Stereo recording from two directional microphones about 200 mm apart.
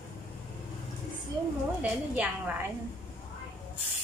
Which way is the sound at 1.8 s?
5° right (ahead or behind).